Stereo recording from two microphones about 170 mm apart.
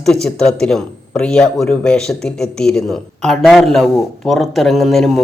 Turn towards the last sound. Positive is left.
turn(degrees=0)  # may be behind; listen again after turning